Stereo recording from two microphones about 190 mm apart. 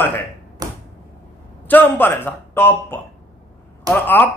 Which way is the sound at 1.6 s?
10° left (ahead or behind).